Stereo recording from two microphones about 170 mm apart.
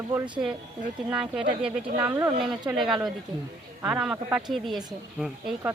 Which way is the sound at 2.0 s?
20° right (ahead or behind).